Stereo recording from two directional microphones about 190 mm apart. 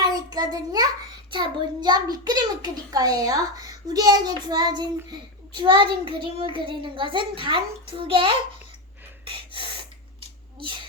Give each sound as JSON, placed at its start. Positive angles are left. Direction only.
{"t": 0.0, "sound": "child singing", "side_deg": -20}
{"t": 1.3, "sound": "a child's voice", "side_deg": -25}
{"t": 9.2, "sound": "gasp", "side_deg": -30}
{"t": 10.6, "sound": "a child's voice", "side_deg": -25}